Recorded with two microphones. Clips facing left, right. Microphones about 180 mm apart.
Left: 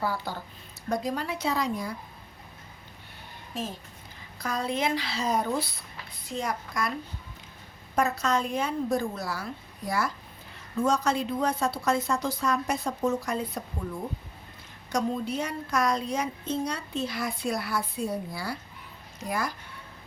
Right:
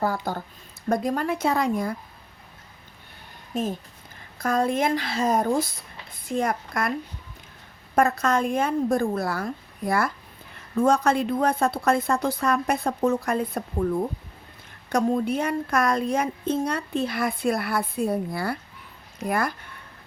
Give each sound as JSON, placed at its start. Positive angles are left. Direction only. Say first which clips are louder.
{"t": 0.0, "sound": "a woman's voice", "louder": "right 5 dB", "side_deg": -45}
{"t": 4.4, "sound": "a woman's voice", "louder": "right 7 dB", "side_deg": -50}
{"t": 7.9, "sound": "a woman's voice", "louder": "right 5 dB", "side_deg": -50}